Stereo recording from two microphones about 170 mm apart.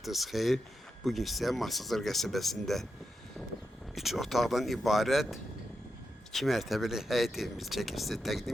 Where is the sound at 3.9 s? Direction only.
Centre (ahead or behind).